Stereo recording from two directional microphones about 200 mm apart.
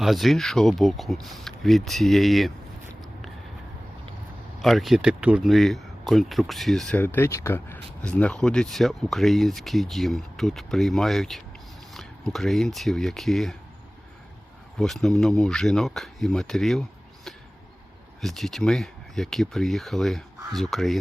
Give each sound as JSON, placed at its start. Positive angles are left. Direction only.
{"t": 0.0, "sound": "speech", "side_deg": 0}
{"t": 4.6, "sound": "speech", "side_deg": 0}
{"t": 14.8, "sound": "speech", "side_deg": 0}
{"t": 18.2, "sound": "speech", "side_deg": 0}